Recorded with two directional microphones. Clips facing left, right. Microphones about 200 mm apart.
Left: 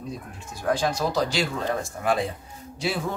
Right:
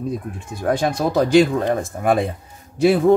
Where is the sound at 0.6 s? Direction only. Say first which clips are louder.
Right 5 dB; 55° right (ahead or behind).